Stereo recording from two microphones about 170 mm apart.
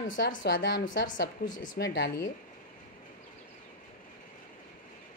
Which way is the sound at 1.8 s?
75° left (ahead or behind).